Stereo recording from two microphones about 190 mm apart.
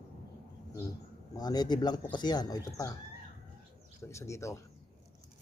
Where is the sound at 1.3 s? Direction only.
20° left (ahead or behind).